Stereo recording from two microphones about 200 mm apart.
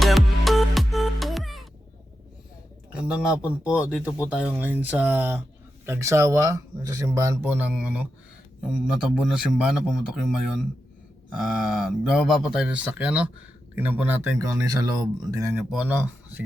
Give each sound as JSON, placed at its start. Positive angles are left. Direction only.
{"t": 0.0, "sound": "music", "side_deg": 0}
{"t": 2.9, "sound": "a man's voice", "side_deg": -5}
{"t": 11.3, "sound": "a man's voice", "side_deg": 0}
{"t": 15.7, "sound": "a man's voice", "side_deg": -5}